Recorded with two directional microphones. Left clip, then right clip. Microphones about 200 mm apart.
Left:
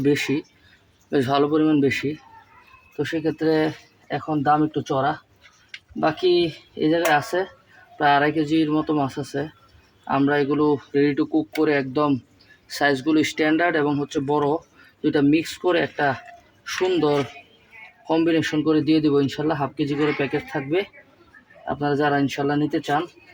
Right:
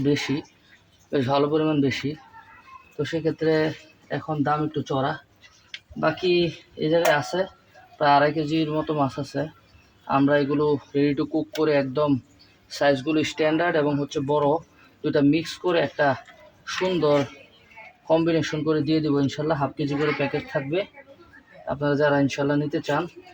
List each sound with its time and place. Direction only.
1.1 s speech: 50° left (ahead or behind)
6.0 s speech: 45° left (ahead or behind)